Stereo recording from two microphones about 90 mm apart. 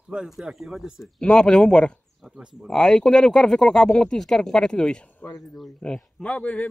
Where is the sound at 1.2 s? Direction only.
10° left (ahead or behind).